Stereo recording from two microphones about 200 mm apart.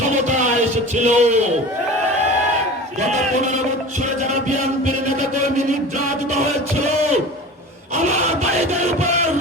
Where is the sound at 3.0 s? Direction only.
35° right (ahead or behind).